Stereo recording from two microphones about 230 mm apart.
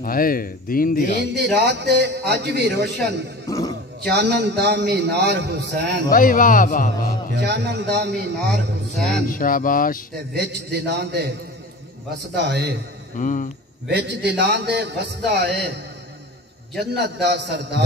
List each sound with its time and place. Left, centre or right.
0.0 s speech: left
1.1 s a man's voice: right
3.4 s a sound: centre
4.0 s a man's voice: right
6.0 s speech: left
7.3 s a man's voice: right
9.3 s speech: left
10.3 s a man's voice: right
12.4 s a man's voice: right
13.1 s speech: left
13.8 s a man's voice: right